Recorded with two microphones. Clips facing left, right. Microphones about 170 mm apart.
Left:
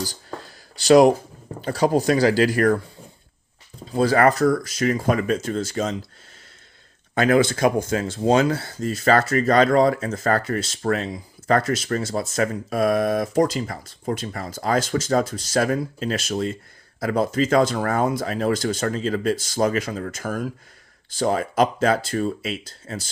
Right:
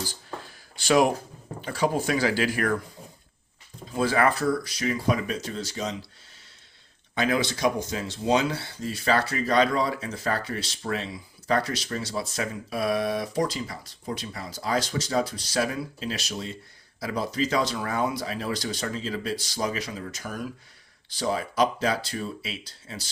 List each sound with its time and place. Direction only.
0.0 s a sound: 40° left (ahead or behind)
1.6 s speech: 40° left (ahead or behind)
3.9 s speech: 40° left (ahead or behind)
7.2 s speech: 50° left (ahead or behind)